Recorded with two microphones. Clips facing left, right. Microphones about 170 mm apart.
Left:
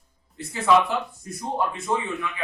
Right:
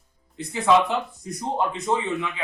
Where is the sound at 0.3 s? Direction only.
20° right (ahead or behind).